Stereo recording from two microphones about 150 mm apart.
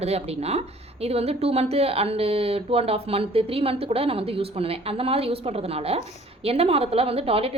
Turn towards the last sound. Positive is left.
turn(degrees=-40)  # may be behind; listen again after turning